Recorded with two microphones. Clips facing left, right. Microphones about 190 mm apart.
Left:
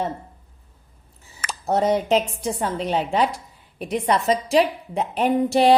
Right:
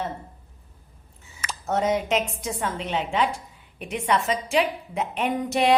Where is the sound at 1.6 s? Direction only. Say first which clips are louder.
Left 4 dB; 35° left (ahead or behind).